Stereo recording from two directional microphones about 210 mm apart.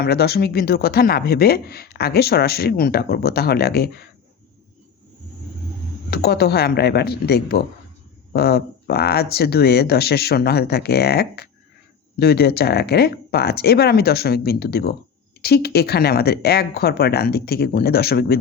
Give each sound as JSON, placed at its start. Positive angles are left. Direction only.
{"t": 0.0, "sound": "speech", "side_deg": 50}
{"t": 6.1, "sound": "speech", "side_deg": 50}